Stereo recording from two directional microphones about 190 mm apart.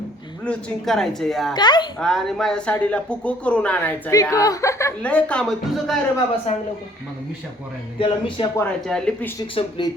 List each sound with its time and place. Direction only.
0.4 s speech: centre (ahead or behind)
1.5 s speech: 25° left (ahead or behind)
2.0 s speech: 5° left (ahead or behind)
7.9 s speech: 25° left (ahead or behind)
8.5 s speech: 5° left (ahead or behind)
9.6 s speech: 25° left (ahead or behind)